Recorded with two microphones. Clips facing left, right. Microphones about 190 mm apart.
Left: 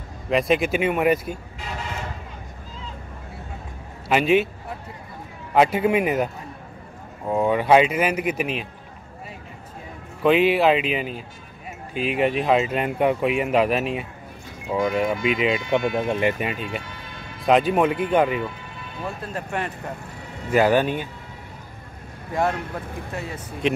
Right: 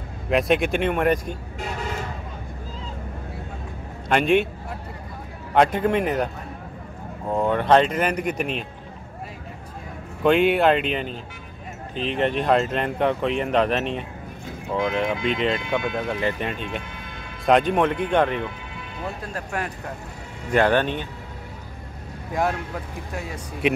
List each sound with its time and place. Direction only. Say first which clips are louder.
0.3 s speech: even; centre (ahead or behind)
4.1 s speech: even; 5° left (ahead or behind)
5.5 s speech: left 1 dB; 5° left (ahead or behind)
10.2 s speech: even; centre (ahead or behind)
16.1 s speech: left 3 dB; 20° left (ahead or behind)
16.3 s speech: left 1 dB; 5° left (ahead or behind)
23.1 s speech: right 1 dB; centre (ahead or behind)